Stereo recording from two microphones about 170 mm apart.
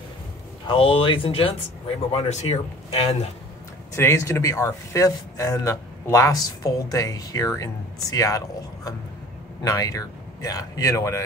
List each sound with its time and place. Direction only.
0.7 s speech: 30° left (ahead or behind)
3.9 s speech: 15° left (ahead or behind)